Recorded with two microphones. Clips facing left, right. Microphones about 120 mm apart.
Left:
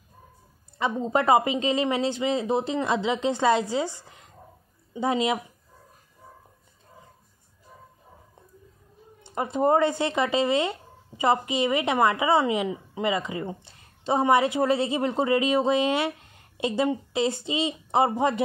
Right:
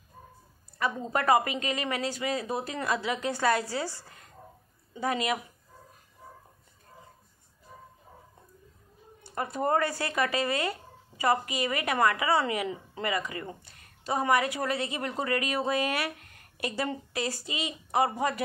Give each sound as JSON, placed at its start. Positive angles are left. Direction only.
{"t": 0.7, "sound": "speech", "side_deg": 25}
{"t": 9.2, "sound": "speech", "side_deg": 20}